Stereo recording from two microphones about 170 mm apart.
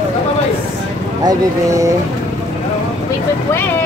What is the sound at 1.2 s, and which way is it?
Speech, 20° right (ahead or behind).